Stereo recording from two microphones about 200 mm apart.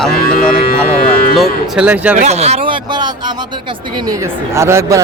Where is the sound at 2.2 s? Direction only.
35° right (ahead or behind).